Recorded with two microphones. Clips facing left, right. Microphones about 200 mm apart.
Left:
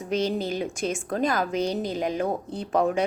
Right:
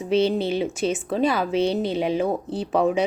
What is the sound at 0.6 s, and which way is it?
Speech, 5° right (ahead or behind).